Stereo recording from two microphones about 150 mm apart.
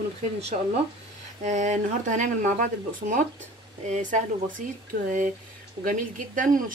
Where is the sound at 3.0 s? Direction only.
90° right.